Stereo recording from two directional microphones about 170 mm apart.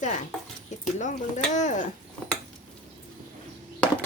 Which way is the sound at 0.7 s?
45° left (ahead or behind).